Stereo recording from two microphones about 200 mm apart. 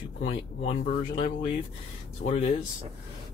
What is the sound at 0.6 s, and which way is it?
Speech, 35° left (ahead or behind).